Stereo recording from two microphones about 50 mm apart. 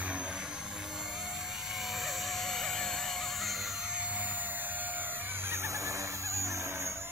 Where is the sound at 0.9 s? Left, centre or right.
Centre.